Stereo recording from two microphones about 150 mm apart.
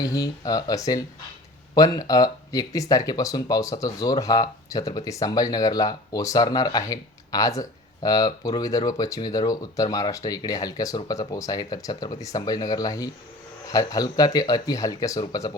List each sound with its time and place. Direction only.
0.0 s speech: 25° left (ahead or behind)